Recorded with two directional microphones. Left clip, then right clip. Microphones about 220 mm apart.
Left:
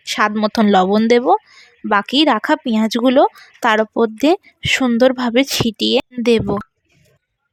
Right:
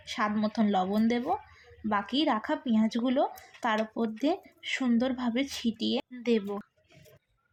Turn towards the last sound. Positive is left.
turn(degrees=40)  # may be behind; listen again after turning